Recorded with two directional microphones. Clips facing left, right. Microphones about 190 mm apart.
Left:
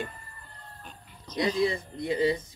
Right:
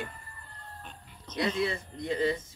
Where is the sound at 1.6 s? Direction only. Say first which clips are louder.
Left 4 dB; 15° left (ahead or behind).